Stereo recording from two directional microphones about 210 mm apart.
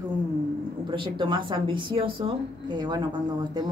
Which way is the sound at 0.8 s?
25° right (ahead or behind).